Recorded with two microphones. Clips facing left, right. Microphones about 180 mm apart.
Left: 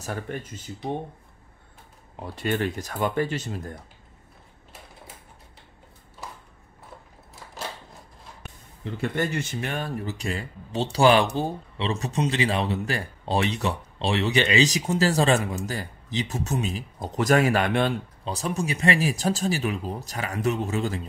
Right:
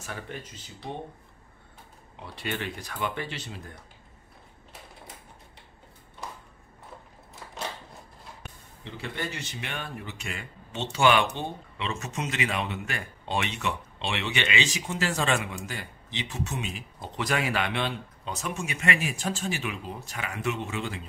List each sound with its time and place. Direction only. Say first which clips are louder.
0.0 s speech: left 6 dB; 45° left (ahead or behind)
2.1 s speech: left 7 dB; 45° left (ahead or behind)
8.8 s speech: left 8 dB; 50° left (ahead or behind)
18.2 s speech: left 5 dB; 35° left (ahead or behind)